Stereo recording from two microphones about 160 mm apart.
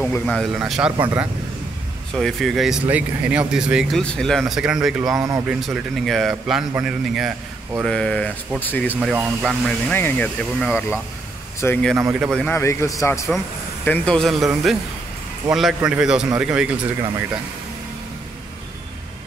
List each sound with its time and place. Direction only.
0.0 s speech: 10° left (ahead or behind)
2.1 s speech: centre (ahead or behind)
5.1 s speech: 20° right (ahead or behind)
5.5 s speech: centre (ahead or behind)
9.1 s speech: centre (ahead or behind)
12.1 s speech: 5° right (ahead or behind)
12.4 s speech: 15° left (ahead or behind)
13.8 s speech: 10° left (ahead or behind); by 16.8 s 5° right (ahead or behind)